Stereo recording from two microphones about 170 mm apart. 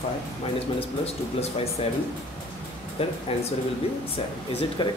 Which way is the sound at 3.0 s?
35° left (ahead or behind).